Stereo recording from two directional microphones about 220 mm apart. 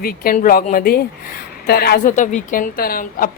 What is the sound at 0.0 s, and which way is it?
Speech, 40° left (ahead or behind).